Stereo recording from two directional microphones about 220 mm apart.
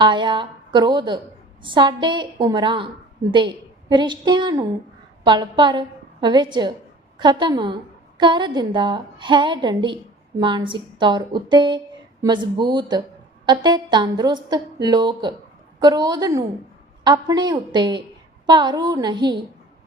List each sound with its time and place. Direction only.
0.0 s a woman's voice: 20° right (ahead or behind)